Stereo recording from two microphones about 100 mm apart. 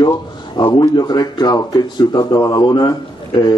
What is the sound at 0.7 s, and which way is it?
A man's voice, 40° left (ahead or behind).